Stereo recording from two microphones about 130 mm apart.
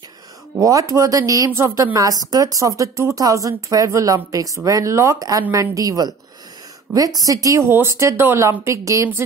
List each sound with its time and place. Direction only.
0.6 s speech: 25° right (ahead or behind)